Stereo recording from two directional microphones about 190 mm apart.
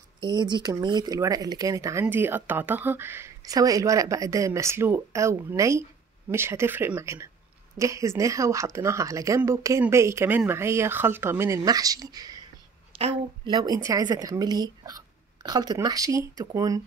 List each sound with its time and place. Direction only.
0.2 s speech: 20° right (ahead or behind)
12.9 s a woman's voice: 30° right (ahead or behind)